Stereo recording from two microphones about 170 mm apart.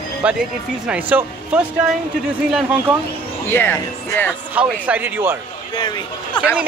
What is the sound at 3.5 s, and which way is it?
Speech, 10° left (ahead or behind).